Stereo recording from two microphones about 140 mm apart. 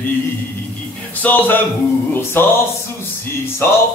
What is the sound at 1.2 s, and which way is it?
A man's voice, 10° left (ahead or behind).